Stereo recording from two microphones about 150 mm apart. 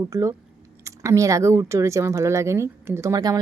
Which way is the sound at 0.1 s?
20° right (ahead or behind).